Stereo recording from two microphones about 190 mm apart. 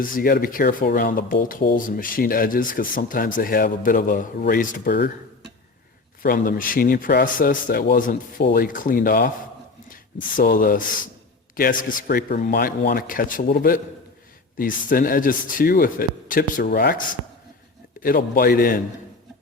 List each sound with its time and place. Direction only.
0.0 s speech: 50° left (ahead or behind)
4.9 s speech: 60° left (ahead or behind)
6.2 s speech: 50° left (ahead or behind)
18.0 s speech: 50° left (ahead or behind)